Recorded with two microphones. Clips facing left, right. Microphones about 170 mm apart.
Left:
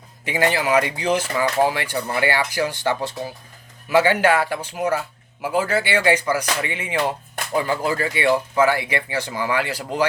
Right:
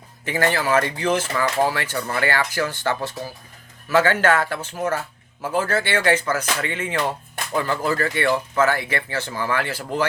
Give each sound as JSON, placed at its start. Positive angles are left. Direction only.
{"t": 0.3, "sound": "speech", "side_deg": 15}